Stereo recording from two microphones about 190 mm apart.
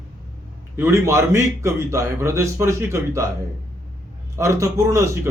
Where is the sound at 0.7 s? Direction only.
15° right (ahead or behind).